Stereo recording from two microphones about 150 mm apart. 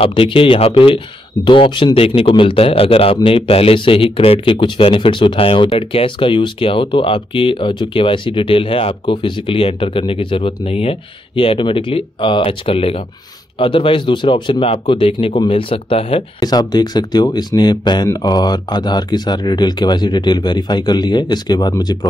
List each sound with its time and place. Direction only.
0.0 s speech: 35° left (ahead or behind)
16.3 s speech: 25° left (ahead or behind)